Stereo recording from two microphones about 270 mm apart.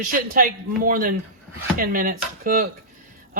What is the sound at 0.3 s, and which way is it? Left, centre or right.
Speech, right.